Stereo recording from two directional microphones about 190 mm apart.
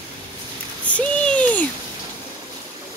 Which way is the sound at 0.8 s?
5° left (ahead or behind).